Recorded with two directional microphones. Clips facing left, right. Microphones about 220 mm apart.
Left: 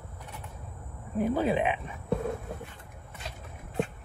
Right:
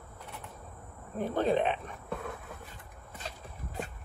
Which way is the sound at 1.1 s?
5° left (ahead or behind).